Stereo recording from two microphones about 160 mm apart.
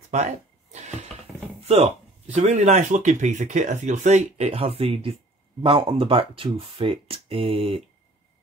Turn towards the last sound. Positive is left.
turn(degrees=-35)  # may be behind; listen again after turning